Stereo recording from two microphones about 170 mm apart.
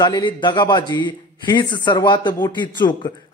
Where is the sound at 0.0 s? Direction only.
25° left (ahead or behind).